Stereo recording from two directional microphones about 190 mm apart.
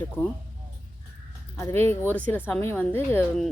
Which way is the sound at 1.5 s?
15° left (ahead or behind).